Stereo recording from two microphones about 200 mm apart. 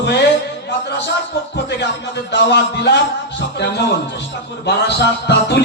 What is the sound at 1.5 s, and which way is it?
Speech, 55° left (ahead or behind).